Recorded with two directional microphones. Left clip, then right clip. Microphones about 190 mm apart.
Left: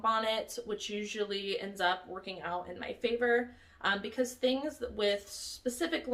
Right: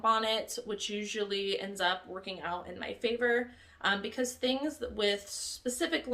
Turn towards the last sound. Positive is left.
turn(degrees=-20)  # may be behind; listen again after turning